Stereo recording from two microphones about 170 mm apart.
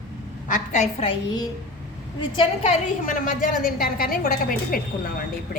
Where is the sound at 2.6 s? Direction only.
45° left (ahead or behind).